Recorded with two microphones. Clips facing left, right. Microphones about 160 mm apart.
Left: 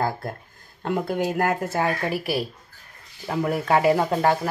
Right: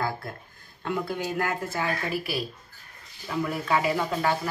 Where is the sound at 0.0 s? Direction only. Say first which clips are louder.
Left 4 dB; 50° left (ahead or behind).